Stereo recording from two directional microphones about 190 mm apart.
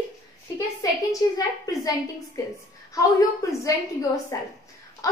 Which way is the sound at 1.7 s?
20° left (ahead or behind).